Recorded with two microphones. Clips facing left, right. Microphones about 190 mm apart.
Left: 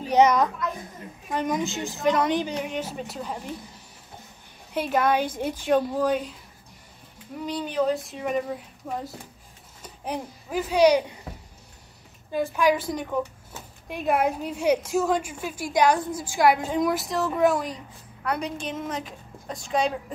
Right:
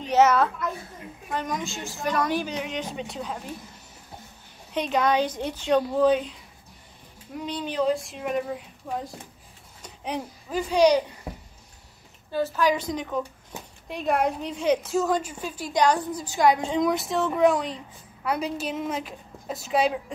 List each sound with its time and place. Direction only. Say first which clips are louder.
0.0 s a child's voice: left 1 dB; 15° left (ahead or behind)
4.7 s a woman's voice: even; 10° left (ahead or behind)
7.4 s a woman's voice: even; centre (ahead or behind)
10.0 s a woman's voice: even; 10° left (ahead or behind)
12.5 s a woman's voice: left 3 dB; 10° left (ahead or behind); by 20.0 s 5° right (ahead or behind)